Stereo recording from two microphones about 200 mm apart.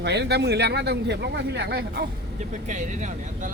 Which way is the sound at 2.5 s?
40° right (ahead or behind).